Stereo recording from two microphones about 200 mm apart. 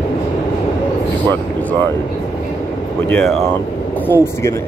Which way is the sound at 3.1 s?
10° left (ahead or behind).